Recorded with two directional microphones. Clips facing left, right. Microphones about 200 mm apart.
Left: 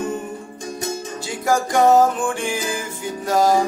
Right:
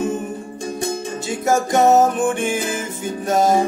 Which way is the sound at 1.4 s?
25° right (ahead or behind).